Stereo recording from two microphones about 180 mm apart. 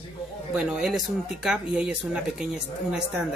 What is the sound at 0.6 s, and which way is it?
Speech, 5° right (ahead or behind).